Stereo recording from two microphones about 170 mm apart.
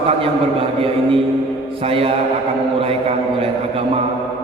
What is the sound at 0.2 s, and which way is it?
A man's voice, 35° right (ahead or behind).